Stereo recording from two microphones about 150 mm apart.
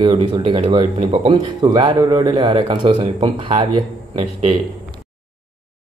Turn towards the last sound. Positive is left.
turn(degrees=-35)  # may be behind; listen again after turning